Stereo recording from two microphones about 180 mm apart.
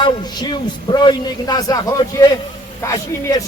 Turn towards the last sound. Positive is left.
turn(degrees=20)  # may be behind; listen again after turning